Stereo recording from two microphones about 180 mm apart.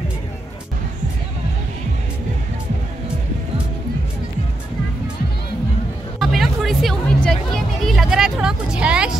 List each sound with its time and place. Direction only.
6.1 s music: centre (ahead or behind)